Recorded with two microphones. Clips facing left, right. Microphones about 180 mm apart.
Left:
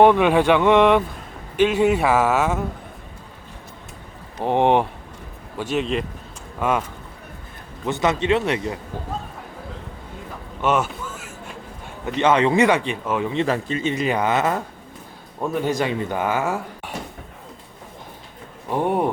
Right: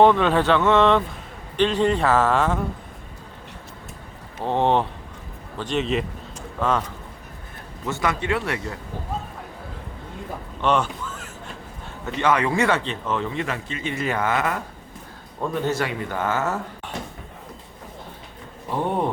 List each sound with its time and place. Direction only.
0.0 s speech: 15° left (ahead or behind)
4.4 s speech: 15° left (ahead or behind)
5.5 s a man's voice: 5° left (ahead or behind)
6.6 s speech: 10° left (ahead or behind)
7.9 s speech: 20° left (ahead or behind)
10.6 s a sound: 5° left (ahead or behind)
12.0 s speech: 20° left (ahead or behind)
13.3 s a man's voice: 30° left (ahead or behind)
13.8 s speech: 15° left (ahead or behind)
15.4 s speech: 10° left (ahead or behind)
18.7 s speech: 10° left (ahead or behind)